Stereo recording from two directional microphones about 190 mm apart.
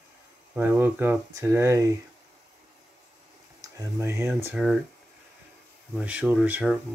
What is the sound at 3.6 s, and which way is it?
Speech, 15° right (ahead or behind).